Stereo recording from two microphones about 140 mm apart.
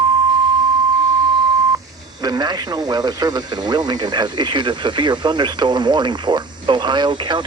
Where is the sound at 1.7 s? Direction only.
30° right (ahead or behind).